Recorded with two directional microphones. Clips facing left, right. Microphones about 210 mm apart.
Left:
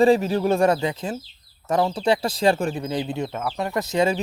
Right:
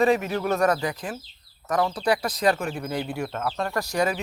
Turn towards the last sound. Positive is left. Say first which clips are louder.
# left 4 dB
turn(degrees=25)  # may be behind; listen again after turning